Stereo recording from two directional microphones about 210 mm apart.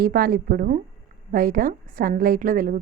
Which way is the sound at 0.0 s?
45° right (ahead or behind).